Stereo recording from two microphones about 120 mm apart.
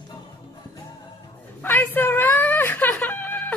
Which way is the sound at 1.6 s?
15° left (ahead or behind).